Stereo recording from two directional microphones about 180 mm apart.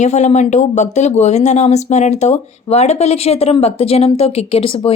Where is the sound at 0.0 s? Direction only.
40° left (ahead or behind).